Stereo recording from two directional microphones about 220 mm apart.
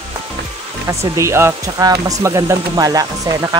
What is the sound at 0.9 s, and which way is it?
Speech, 15° right (ahead or behind).